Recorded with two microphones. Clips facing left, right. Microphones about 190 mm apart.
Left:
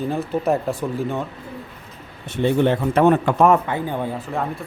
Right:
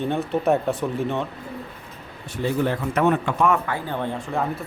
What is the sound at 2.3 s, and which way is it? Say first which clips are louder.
A man's voice: left 5 dB; 25° left (ahead or behind).